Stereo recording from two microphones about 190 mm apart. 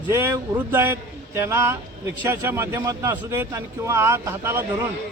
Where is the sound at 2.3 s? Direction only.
10° right (ahead or behind).